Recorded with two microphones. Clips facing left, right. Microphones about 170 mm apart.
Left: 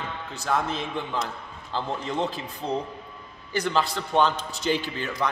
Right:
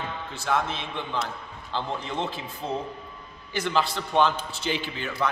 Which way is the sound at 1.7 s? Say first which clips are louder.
Left 1 dB; 5° left (ahead or behind).